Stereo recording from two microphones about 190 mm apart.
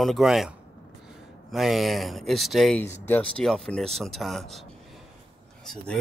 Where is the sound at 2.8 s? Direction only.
10° left (ahead or behind).